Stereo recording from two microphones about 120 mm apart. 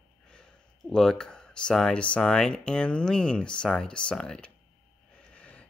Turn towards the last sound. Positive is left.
turn(degrees=10)  # may be behind; listen again after turning